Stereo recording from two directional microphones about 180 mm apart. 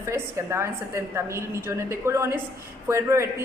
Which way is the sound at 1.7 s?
15° right (ahead or behind).